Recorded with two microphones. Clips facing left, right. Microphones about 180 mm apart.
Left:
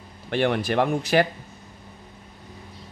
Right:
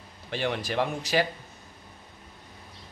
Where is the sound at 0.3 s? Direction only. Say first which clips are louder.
Left 7 dB; 60° left (ahead or behind).